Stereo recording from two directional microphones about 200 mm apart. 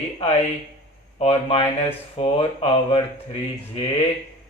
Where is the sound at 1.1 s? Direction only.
30° left (ahead or behind).